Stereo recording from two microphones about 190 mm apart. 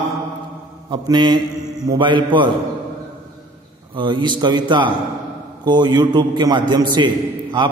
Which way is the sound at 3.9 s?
25° right (ahead or behind).